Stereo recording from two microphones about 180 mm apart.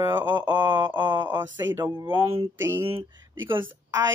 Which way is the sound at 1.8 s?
15° right (ahead or behind).